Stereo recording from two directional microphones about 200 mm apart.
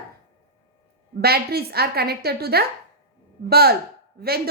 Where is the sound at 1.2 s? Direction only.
50° right (ahead or behind).